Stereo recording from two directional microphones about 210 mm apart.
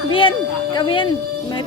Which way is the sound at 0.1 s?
25° left (ahead or behind).